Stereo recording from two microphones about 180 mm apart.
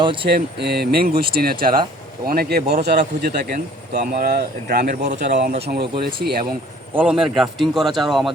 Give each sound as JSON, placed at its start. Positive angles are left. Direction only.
{"t": 0.0, "sound": "speech", "side_deg": -30}
{"t": 0.3, "sound": "speech", "side_deg": -60}
{"t": 6.9, "sound": "a man's voice", "side_deg": -5}